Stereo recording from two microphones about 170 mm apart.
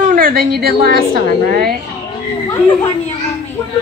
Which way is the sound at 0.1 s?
60° right (ahead or behind).